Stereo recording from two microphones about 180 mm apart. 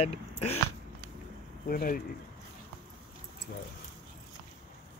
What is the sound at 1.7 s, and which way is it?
Speech, 55° left (ahead or behind).